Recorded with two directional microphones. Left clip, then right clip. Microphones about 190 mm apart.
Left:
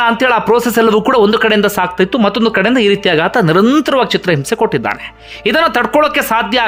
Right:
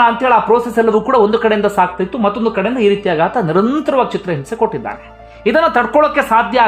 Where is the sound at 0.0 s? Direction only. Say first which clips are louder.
Right 1 dB; 20° left (ahead or behind).